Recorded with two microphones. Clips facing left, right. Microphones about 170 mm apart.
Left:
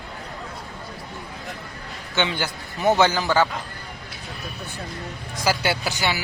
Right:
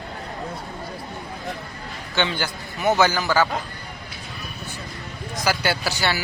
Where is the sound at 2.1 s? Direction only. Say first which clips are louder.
Even; 20° left (ahead or behind).